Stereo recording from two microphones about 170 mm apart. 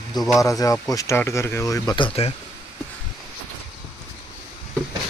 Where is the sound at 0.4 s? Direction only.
20° left (ahead or behind).